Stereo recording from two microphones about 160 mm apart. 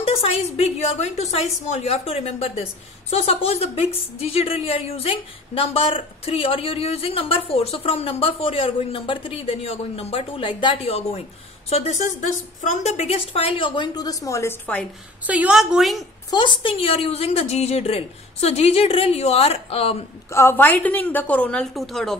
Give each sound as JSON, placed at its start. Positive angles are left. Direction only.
{"t": 0.0, "sound": "a woman's voice", "side_deg": 35}
{"t": 15.2, "sound": "a woman's voice", "side_deg": -10}
{"t": 16.3, "sound": "a woman's voice", "side_deg": 30}
{"t": 20.2, "sound": "a woman's voice", "side_deg": 15}